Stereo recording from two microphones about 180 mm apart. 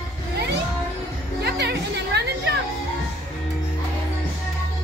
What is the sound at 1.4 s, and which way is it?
Chatter, 65° right (ahead or behind).